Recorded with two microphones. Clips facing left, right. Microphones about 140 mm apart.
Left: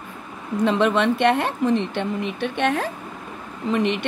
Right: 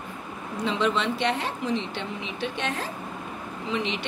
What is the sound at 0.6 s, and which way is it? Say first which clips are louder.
A woman's voice: left 6 dB; 55° left (ahead or behind).